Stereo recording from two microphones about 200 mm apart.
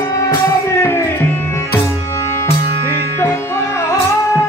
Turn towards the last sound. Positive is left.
turn(degrees=15)  # may be behind; listen again after turning